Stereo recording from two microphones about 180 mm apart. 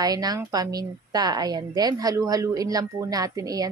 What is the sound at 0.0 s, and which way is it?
A woman's voice, 20° right (ahead or behind).